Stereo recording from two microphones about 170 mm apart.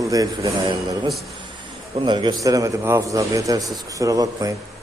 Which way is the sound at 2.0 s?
25° right (ahead or behind).